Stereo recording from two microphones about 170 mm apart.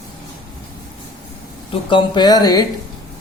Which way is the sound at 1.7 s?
30° left (ahead or behind).